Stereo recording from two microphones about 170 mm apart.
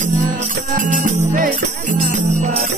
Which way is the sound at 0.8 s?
50° right (ahead or behind).